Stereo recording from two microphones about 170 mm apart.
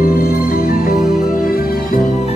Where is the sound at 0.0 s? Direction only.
60° left (ahead or behind).